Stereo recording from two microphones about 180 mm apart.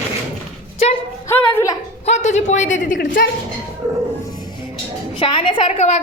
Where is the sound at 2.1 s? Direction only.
40° left (ahead or behind).